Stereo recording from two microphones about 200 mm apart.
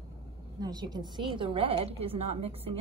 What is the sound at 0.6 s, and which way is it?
A woman's voice, 20° right (ahead or behind).